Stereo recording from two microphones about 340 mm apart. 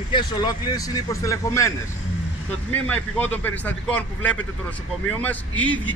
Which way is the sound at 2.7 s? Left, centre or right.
Centre.